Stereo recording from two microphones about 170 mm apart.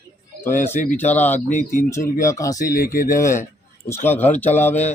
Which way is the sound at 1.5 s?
55° left (ahead or behind).